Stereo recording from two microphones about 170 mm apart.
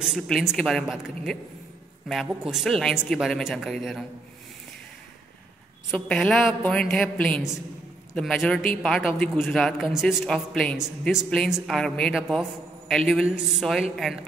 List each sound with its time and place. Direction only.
0.0 s speech: 5° right (ahead or behind)
2.5 s speech: centre (ahead or behind)
5.9 s speech: 5° left (ahead or behind)